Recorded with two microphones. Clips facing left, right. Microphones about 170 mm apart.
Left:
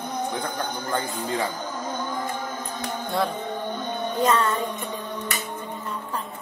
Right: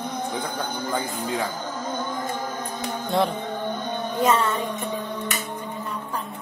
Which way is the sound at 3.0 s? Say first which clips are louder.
Right 3 dB; 20° right (ahead or behind).